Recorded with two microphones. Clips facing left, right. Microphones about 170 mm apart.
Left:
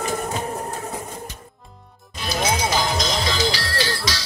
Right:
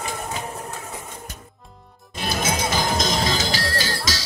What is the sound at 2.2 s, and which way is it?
Music, 50° right (ahead or behind).